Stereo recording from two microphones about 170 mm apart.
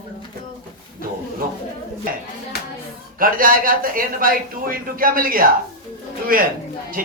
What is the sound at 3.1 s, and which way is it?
A man's voice, 55° right (ahead or behind).